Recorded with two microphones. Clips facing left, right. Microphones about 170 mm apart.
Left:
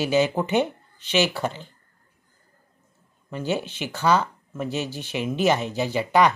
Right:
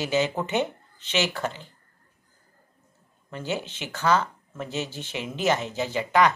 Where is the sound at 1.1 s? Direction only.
15° left (ahead or behind).